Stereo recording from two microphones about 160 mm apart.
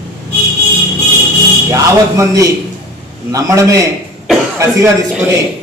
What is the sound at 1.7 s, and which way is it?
A man's voice, 20° right (ahead or behind).